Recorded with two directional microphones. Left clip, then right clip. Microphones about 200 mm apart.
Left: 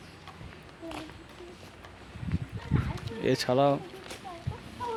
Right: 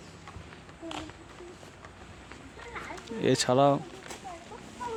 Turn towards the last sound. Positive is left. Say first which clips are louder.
# left 2 dB
turn(degrees=-15)  # may be behind; listen again after turning